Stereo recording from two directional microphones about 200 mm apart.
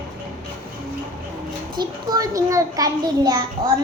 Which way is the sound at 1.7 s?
20° right (ahead or behind).